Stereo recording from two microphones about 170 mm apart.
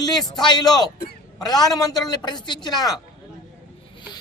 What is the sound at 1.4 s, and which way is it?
A man's voice, 25° left (ahead or behind).